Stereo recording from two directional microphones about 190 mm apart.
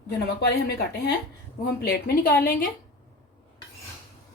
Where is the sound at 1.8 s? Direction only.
50° left (ahead or behind).